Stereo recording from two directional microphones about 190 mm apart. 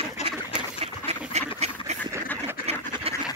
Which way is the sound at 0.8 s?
35° right (ahead or behind).